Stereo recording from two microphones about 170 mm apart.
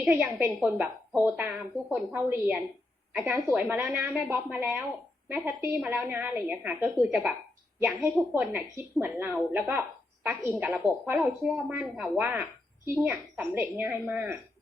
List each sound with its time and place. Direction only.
0.0 s speech: 10° right (ahead or behind)